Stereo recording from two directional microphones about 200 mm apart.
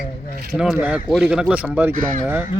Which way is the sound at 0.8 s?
5° right (ahead or behind).